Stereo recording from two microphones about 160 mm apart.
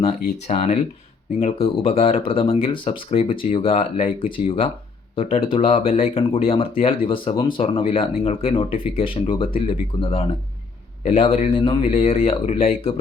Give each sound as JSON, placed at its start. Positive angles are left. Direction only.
{"t": 0.4, "sound": "speech", "side_deg": 45}